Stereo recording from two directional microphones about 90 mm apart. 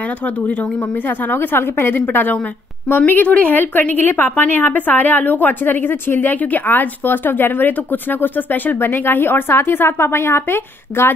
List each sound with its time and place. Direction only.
0.2 s a woman's voice: 15° left (ahead or behind)